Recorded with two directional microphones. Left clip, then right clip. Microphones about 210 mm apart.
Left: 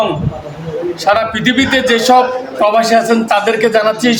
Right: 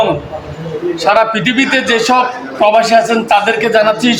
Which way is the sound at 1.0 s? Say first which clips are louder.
Right 2 dB; 15° left (ahead or behind).